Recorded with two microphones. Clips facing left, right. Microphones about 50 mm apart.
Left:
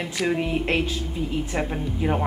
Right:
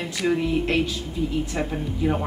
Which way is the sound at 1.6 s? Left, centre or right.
Centre.